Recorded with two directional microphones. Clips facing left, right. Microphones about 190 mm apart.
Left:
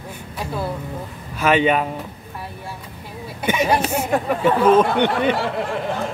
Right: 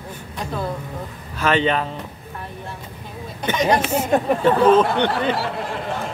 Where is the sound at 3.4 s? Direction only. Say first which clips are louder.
Even; 5° left (ahead or behind).